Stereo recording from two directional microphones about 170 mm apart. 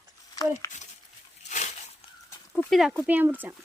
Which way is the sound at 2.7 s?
Centre (ahead or behind).